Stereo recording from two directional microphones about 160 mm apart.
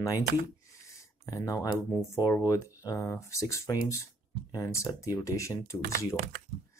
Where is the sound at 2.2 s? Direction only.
20° left (ahead or behind).